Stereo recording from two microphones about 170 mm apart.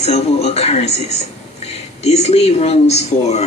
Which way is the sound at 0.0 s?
40° left (ahead or behind).